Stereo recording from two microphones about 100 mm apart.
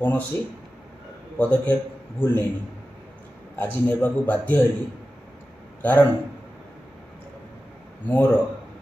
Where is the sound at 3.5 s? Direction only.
20° left (ahead or behind).